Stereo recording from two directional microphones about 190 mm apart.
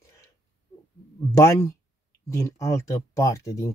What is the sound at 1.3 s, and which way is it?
Speech, 15° left (ahead or behind).